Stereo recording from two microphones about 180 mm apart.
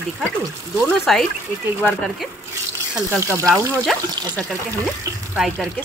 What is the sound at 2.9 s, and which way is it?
Speech, 10° right (ahead or behind).